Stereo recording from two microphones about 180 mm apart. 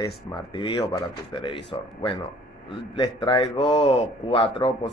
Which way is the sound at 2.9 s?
25° left (ahead or behind).